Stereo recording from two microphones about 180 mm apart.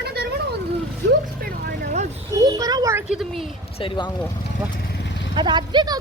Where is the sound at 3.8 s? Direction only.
25° left (ahead or behind).